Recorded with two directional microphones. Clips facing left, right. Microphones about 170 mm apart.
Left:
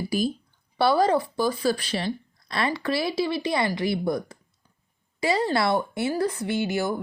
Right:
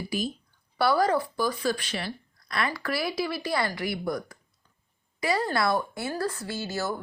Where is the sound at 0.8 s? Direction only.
25° left (ahead or behind).